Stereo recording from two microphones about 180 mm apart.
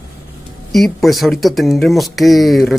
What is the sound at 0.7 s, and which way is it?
Speech, centre (ahead or behind).